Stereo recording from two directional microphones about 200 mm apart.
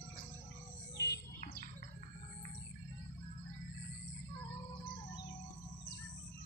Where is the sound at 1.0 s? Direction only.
50° left (ahead or behind).